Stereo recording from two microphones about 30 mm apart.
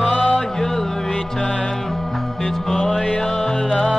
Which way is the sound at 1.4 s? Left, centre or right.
Left.